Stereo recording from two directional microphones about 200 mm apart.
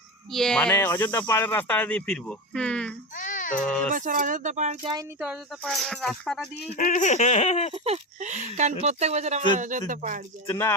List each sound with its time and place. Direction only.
0.3 s speech: centre (ahead or behind)
3.2 s a sound: 40° left (ahead or behind)
3.9 s speech: 40° right (ahead or behind)
4.8 s speech: 20° right (ahead or behind)
5.2 s speech: centre (ahead or behind)
6.7 s speech: 40° left (ahead or behind)
7.7 s speech: 35° right (ahead or behind)
10.5 s speech: 15° left (ahead or behind)